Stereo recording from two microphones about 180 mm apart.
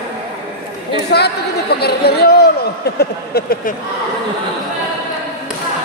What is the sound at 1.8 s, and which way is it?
Speech, 60° left (ahead or behind).